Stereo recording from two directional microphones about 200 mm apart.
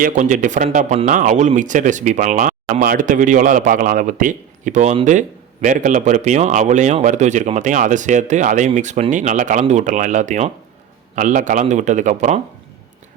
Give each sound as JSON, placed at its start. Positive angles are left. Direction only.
{"t": 0.0, "sound": "speech", "side_deg": -40}